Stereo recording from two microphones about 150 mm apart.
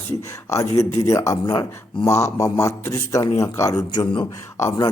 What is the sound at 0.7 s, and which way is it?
A man's voice, 20° left (ahead or behind).